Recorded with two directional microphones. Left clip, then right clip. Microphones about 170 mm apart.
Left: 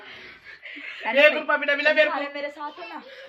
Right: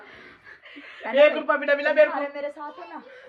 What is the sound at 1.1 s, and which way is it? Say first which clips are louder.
Speech: even; 35° right (ahead or behind).